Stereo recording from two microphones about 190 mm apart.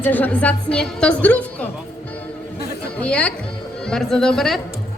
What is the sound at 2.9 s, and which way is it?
Speech, 5° left (ahead or behind).